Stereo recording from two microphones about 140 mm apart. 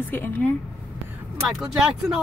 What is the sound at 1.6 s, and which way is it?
Speech, 5° right (ahead or behind).